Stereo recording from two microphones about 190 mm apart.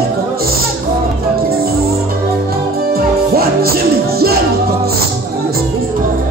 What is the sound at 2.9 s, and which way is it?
Music, 50° right (ahead or behind).